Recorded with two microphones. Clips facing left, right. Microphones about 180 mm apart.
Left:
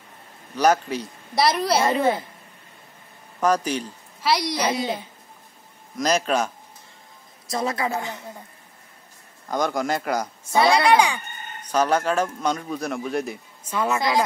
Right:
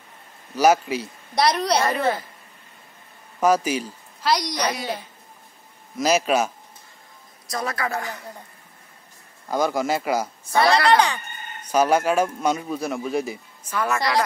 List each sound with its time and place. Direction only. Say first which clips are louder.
0.6 s a man's voice: right 2 dB; 10° right (ahead or behind)
1.3 s a man's voice: even; centre (ahead or behind)
1.9 s a man's voice: left 2 dB; 20° left (ahead or behind)
3.3 s a man's voice: right 2 dB; 10° right (ahead or behind)
4.2 s a man's voice: even; 5° left (ahead or behind)
4.6 s a man's voice: left 3 dB; 25° left (ahead or behind)
5.9 s a man's voice: right 2 dB; 5° right (ahead or behind)
7.4 s a man's voice: left 2 dB; 25° left (ahead or behind)
9.5 s a man's voice: right 2 dB; 5° right (ahead or behind)
10.5 s a man's voice: even; 5° left (ahead or behind)
11.6 s a man's voice: right 2 dB; 10° right (ahead or behind)
13.7 s a man's voice: left 1 dB; 20° left (ahead or behind)